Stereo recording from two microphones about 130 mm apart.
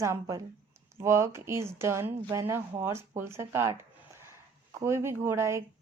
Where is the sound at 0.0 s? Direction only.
25° right (ahead or behind).